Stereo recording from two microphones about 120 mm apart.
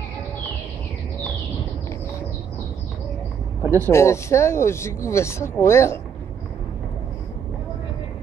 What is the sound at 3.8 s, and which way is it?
Speech, 25° left (ahead or behind).